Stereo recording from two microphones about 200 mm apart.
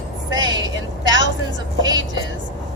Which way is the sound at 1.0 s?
65° right (ahead or behind).